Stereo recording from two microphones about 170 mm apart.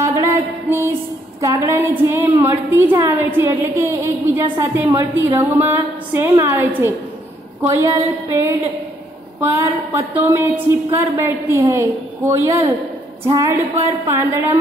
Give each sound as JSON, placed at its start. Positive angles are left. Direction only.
{"t": 0.0, "sound": "music", "side_deg": -15}
{"t": 1.4, "sound": "a woman's voice", "side_deg": -20}